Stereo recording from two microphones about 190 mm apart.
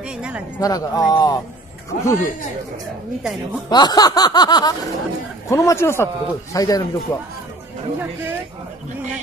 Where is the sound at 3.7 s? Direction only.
20° left (ahead or behind).